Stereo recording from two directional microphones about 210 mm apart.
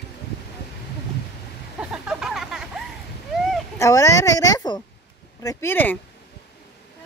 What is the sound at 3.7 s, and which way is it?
Speech, 15° left (ahead or behind).